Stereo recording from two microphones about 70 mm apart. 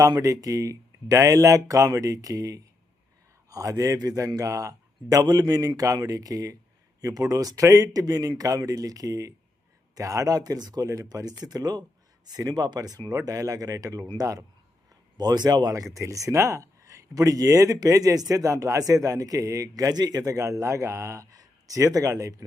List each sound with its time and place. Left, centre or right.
0.1 s speech: right
15.2 s speech: right